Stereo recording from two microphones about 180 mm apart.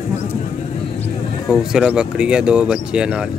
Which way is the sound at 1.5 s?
5° right (ahead or behind).